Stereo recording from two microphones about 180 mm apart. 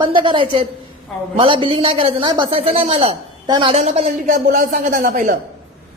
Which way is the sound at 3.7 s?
35° right (ahead or behind).